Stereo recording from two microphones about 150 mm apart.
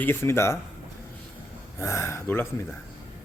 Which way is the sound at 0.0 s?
15° left (ahead or behind).